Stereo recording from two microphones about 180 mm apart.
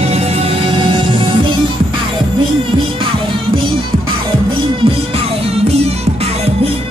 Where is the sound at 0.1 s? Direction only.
35° right (ahead or behind).